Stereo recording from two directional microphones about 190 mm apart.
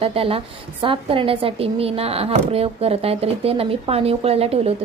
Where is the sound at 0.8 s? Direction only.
25° right (ahead or behind).